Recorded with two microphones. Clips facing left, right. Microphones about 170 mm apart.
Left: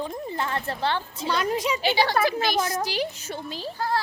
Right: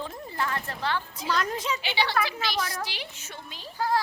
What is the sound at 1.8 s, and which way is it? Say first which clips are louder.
Speech: left 6 dB; 40° left (ahead or behind).